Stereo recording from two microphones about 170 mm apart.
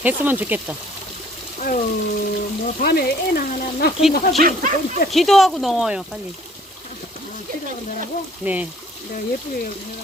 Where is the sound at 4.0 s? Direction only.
Centre (ahead or behind).